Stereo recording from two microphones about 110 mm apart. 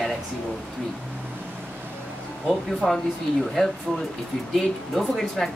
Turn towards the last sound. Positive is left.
turn(degrees=0)  # may be behind; listen again after turning